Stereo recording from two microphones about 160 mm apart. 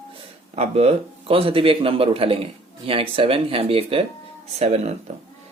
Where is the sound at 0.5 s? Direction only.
40° right (ahead or behind).